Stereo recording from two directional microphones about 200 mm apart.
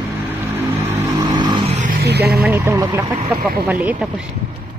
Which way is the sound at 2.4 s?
15° right (ahead or behind).